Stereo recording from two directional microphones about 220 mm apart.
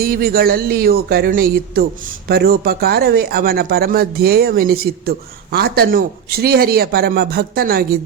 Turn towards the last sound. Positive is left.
turn(degrees=-45)  # may be behind; listen again after turning